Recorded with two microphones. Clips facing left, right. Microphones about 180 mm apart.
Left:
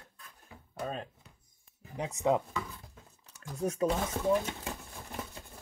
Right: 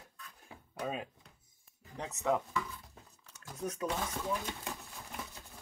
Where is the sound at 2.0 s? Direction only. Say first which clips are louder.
Left 4 dB; 15° left (ahead or behind).